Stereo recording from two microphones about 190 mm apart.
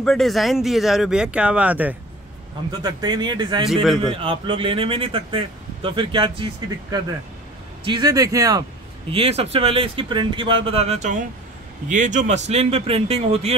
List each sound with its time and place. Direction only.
0.0 s speech: centre (ahead or behind)
2.8 s speech: 20° right (ahead or behind)
3.6 s speech: centre (ahead or behind)
4.0 s speech: 25° right (ahead or behind)
9.1 s speech: 30° right (ahead or behind)